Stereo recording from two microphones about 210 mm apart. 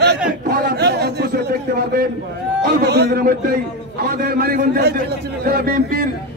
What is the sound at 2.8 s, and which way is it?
A man's voice, 50° right (ahead or behind).